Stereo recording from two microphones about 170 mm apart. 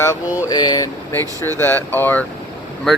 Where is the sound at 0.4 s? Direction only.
25° left (ahead or behind).